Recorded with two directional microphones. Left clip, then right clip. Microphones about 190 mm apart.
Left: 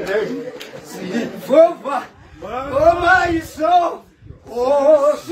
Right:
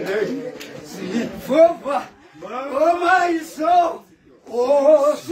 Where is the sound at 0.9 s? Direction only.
10° left (ahead or behind).